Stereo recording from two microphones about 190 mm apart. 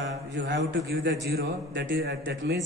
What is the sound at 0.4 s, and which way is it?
A man's voice, 65° right (ahead or behind).